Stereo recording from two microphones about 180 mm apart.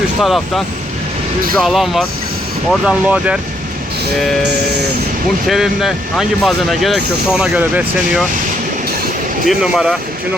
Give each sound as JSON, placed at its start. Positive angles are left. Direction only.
{"t": 0.2, "sound": "speech", "side_deg": 0}
{"t": 5.5, "sound": "speech", "side_deg": 0}
{"t": 9.5, "sound": "speech", "side_deg": -5}